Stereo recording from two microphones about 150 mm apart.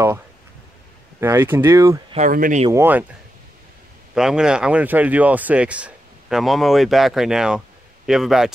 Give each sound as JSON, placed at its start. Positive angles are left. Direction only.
{"t": 1.2, "sound": "speech", "side_deg": -15}
{"t": 2.1, "sound": "speech", "side_deg": -60}
{"t": 2.7, "sound": "speech", "side_deg": -15}
{"t": 4.1, "sound": "speech", "side_deg": -5}